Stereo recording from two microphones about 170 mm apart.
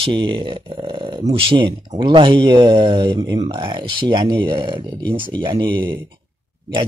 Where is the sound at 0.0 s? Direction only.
30° right (ahead or behind).